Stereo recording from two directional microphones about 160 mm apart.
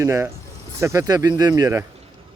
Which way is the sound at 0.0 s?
15° right (ahead or behind).